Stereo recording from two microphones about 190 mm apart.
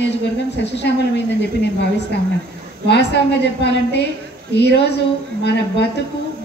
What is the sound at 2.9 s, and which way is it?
A woman's voice, 65° left (ahead or behind).